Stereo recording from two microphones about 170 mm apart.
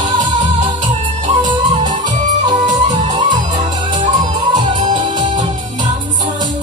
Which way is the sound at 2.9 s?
45° right (ahead or behind).